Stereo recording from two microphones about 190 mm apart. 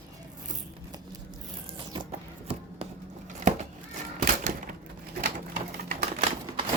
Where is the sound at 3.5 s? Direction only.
40° right (ahead or behind).